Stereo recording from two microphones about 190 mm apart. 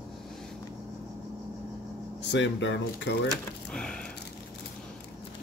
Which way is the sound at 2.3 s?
70° left (ahead or behind).